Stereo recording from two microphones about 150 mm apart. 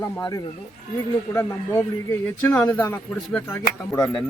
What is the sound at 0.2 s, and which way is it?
Speech, 25° left (ahead or behind).